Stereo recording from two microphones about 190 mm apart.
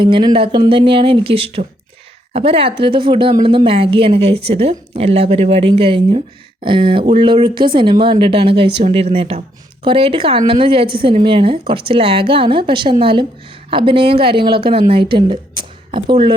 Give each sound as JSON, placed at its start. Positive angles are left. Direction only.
{"t": 0.0, "sound": "speech", "side_deg": -25}